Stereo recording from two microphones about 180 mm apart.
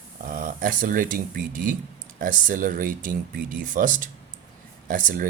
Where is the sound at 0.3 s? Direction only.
50° right (ahead or behind).